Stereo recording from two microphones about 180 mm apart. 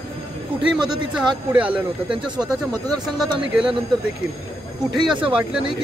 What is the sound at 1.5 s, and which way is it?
Speech, 10° right (ahead or behind).